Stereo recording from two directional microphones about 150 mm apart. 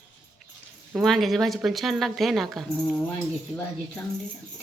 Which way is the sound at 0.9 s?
Centre (ahead or behind).